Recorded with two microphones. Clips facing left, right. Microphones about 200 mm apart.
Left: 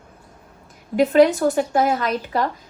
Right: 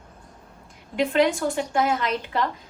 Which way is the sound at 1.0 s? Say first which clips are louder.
Left 6 dB; 40° left (ahead or behind).